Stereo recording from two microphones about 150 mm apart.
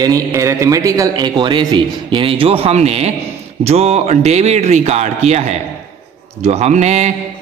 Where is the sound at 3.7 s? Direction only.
45° right (ahead or behind).